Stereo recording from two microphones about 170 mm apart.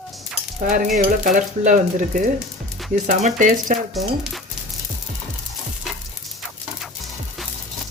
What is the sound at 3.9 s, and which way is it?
Speech, centre (ahead or behind).